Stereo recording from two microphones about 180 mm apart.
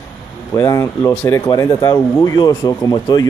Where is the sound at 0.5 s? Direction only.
15° left (ahead or behind).